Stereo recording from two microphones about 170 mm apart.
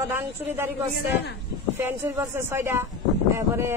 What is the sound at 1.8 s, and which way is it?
Speech, 15° right (ahead or behind).